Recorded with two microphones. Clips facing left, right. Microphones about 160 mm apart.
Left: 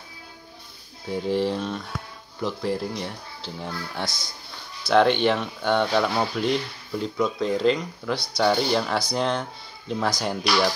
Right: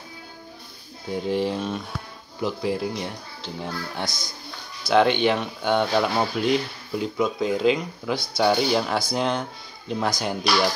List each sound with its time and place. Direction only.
1.1 s speech: centre (ahead or behind)